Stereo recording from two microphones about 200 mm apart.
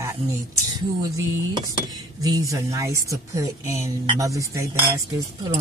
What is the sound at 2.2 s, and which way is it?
Speech, 15° right (ahead or behind).